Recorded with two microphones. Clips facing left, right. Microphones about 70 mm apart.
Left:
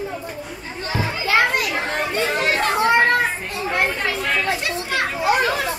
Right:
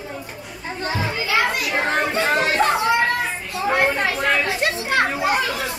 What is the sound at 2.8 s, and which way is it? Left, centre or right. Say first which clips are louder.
Children playing: left 3 dB; left.